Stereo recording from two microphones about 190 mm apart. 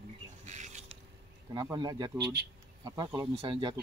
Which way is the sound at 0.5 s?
40° right (ahead or behind).